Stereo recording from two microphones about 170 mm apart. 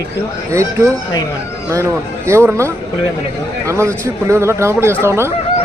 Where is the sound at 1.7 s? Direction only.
15° right (ahead or behind).